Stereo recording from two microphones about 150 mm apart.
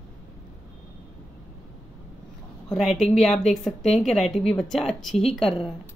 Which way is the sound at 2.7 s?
Centre (ahead or behind).